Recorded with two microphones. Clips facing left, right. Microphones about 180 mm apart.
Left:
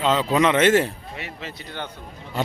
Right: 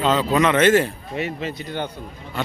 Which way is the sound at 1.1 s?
20° right (ahead or behind).